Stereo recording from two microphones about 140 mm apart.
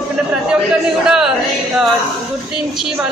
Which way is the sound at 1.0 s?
5° right (ahead or behind).